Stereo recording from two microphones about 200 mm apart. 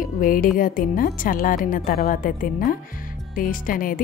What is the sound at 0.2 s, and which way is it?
Music, 45° left (ahead or behind).